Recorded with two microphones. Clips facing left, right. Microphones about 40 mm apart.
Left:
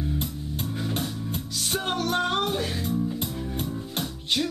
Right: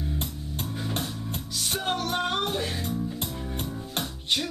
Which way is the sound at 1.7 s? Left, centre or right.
Centre.